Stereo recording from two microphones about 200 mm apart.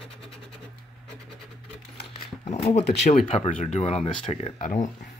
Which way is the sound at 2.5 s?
30° left (ahead or behind).